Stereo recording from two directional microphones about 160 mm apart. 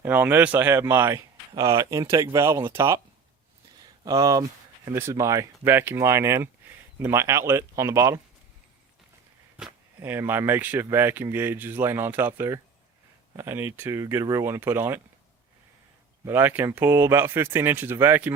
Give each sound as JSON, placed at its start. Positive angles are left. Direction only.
{"t": 0.0, "sound": "speech", "side_deg": -10}
{"t": 4.0, "sound": "speech", "side_deg": -20}
{"t": 10.0, "sound": "speech", "side_deg": -15}
{"t": 16.2, "sound": "speech", "side_deg": -15}